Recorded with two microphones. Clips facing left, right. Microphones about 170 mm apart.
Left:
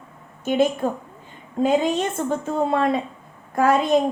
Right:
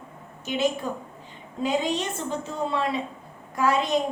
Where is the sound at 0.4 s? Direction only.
50° left (ahead or behind).